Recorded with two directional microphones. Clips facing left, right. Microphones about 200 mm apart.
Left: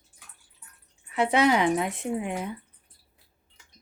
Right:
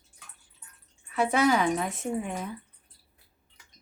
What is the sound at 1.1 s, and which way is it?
Speech, 20° left (ahead or behind).